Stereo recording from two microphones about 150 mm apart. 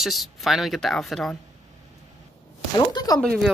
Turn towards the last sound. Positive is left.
turn(degrees=0)  # may be behind; listen again after turning